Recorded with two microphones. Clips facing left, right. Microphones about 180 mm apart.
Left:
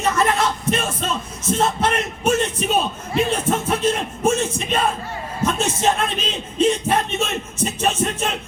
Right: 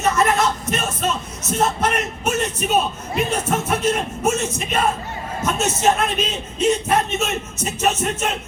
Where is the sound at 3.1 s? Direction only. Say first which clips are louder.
Left 2 dB; 30° left (ahead or behind).